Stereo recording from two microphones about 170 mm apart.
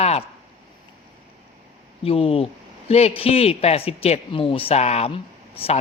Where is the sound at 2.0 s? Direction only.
35° left (ahead or behind).